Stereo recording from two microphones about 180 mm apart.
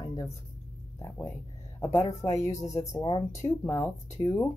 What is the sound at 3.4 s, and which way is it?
Speech, 15° left (ahead or behind).